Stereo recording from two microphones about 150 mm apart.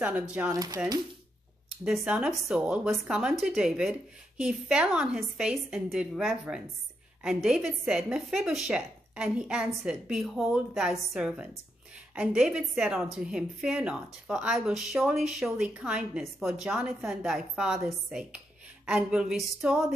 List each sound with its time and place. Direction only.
0.0 s speech: 10° right (ahead or behind)
0.5 s speech: 25° right (ahead or behind)
1.9 s a woman's voice: 5° right (ahead or behind)